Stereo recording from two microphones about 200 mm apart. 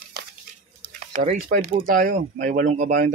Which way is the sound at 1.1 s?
35° right (ahead or behind).